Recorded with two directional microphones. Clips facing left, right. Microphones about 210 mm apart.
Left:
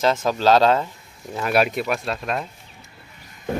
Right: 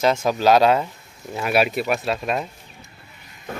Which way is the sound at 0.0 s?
10° right (ahead or behind).